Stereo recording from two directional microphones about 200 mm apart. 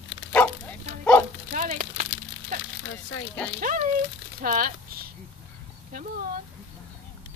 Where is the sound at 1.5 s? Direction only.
40° right (ahead or behind).